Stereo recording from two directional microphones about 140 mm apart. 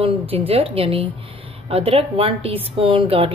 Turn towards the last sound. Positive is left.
turn(degrees=-40)  # may be behind; listen again after turning